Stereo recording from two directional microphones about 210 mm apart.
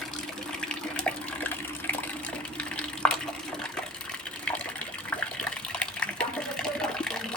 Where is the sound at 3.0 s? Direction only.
5° left (ahead or behind).